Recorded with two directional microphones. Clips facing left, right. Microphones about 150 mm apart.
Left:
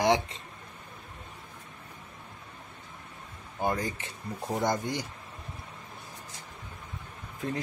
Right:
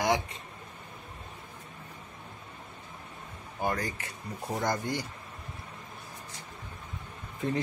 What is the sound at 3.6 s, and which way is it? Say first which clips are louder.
Speech: left 2 dB; 20° left (ahead or behind).